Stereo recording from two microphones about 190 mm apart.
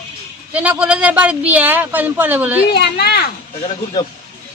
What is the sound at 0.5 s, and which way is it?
Speech, 5° right (ahead or behind).